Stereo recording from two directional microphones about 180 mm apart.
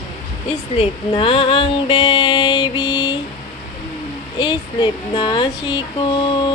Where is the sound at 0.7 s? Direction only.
30° left (ahead or behind).